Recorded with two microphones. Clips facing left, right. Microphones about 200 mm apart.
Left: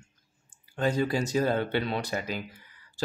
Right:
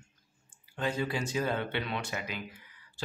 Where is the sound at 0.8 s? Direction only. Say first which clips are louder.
Left 6 dB; 40° left (ahead or behind).